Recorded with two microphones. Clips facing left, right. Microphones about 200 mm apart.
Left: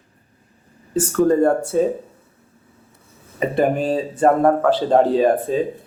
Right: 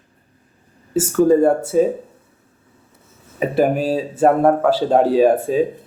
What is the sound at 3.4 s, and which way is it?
Speech, 5° right (ahead or behind).